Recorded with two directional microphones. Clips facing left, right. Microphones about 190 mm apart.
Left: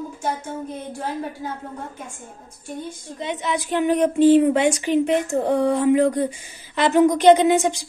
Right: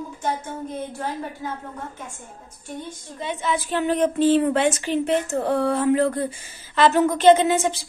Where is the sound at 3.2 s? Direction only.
20° left (ahead or behind).